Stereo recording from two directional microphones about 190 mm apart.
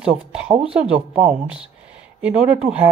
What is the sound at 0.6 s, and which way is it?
Speech, 5° right (ahead or behind).